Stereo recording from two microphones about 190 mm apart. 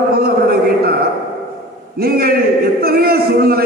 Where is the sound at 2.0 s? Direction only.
55° right (ahead or behind).